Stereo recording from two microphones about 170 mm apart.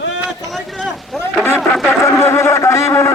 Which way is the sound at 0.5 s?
Centre (ahead or behind).